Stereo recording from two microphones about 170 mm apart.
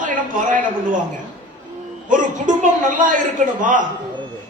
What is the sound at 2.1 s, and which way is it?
A man's voice, 50° right (ahead or behind).